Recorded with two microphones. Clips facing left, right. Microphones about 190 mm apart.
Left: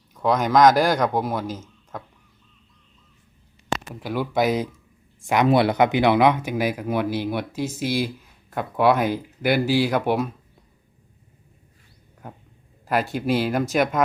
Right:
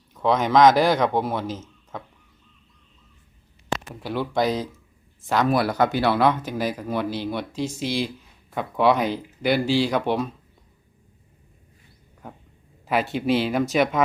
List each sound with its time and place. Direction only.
0.1 s speech: centre (ahead or behind)
4.0 s speech: 10° left (ahead or behind)
12.9 s speech: centre (ahead or behind)